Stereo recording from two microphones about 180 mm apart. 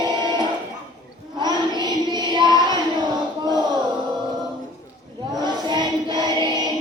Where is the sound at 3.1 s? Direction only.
25° right (ahead or behind).